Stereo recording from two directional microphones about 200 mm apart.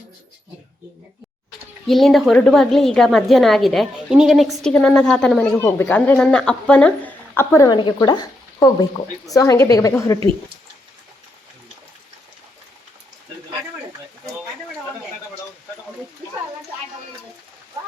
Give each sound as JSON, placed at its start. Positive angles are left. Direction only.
{"t": 1.9, "sound": "a woman's voice", "side_deg": 0}